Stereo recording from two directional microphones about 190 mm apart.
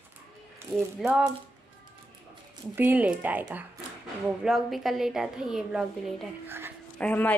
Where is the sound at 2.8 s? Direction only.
10° right (ahead or behind).